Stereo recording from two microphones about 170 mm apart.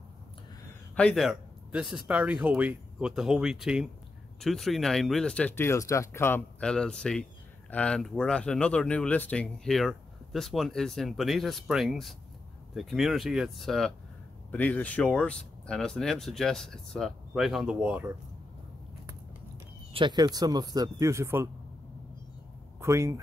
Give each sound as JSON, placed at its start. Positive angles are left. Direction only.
{"t": 0.9, "sound": "speech", "side_deg": 5}
{"t": 19.9, "sound": "speech", "side_deg": -30}
{"t": 22.8, "sound": "speech", "side_deg": -15}